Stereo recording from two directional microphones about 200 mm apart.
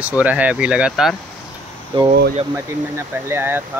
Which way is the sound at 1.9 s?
25° right (ahead or behind).